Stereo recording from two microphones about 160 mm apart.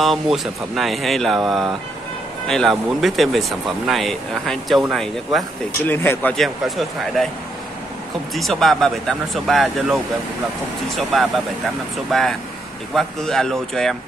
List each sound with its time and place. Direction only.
0.0 s speech: centre (ahead or behind)
5.9 s speech: 15° left (ahead or behind)
6.3 s speech: centre (ahead or behind)
8.4 s speech: centre (ahead or behind)
12.1 s speech: 5° left (ahead or behind)